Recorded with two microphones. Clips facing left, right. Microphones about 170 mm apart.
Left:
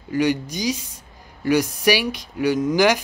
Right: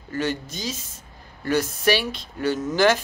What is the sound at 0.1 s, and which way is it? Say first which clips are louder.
Speech: left 6 dB; 15° left (ahead or behind).